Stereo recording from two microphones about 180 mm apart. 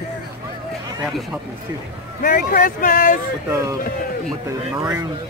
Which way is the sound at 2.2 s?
50° left (ahead or behind).